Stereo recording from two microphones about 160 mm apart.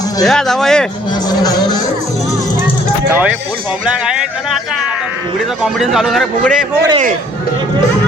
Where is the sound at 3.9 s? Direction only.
5° right (ahead or behind).